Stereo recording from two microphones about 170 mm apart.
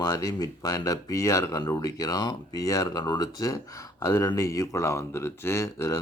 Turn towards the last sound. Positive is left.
turn(degrees=20)  # may be behind; listen again after turning